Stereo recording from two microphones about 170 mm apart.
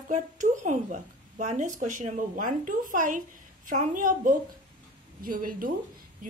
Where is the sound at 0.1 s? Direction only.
45° right (ahead or behind).